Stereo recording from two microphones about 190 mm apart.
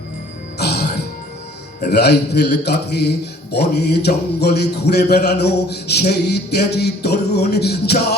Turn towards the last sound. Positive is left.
turn(degrees=60)  # may be behind; listen again after turning